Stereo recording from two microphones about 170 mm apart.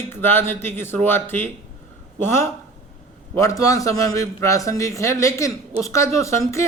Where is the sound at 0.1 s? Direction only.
10° left (ahead or behind).